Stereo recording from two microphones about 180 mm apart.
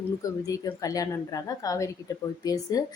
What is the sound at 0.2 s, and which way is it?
Speech, 20° left (ahead or behind).